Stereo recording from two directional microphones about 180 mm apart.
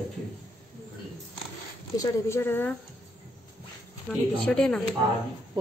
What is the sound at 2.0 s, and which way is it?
Speech, 15° left (ahead or behind).